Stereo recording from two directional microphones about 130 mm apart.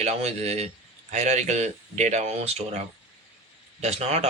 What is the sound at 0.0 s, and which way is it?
Speech, 55° right (ahead or behind).